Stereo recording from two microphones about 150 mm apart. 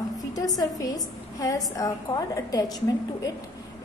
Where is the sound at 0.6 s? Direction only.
25° left (ahead or behind).